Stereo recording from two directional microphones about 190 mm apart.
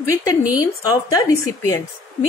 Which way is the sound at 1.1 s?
15° left (ahead or behind).